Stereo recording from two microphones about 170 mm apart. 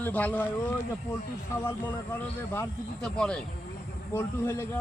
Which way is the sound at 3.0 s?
5° left (ahead or behind).